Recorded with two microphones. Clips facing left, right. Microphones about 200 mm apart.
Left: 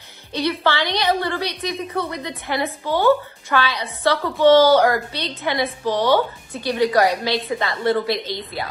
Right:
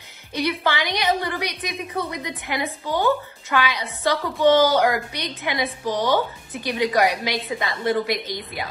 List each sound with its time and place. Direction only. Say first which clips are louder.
0.3 s a woman's voice: left 2 dB; 15° right (ahead or behind)